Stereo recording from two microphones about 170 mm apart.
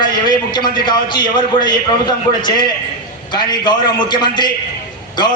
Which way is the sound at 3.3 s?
25° left (ahead or behind).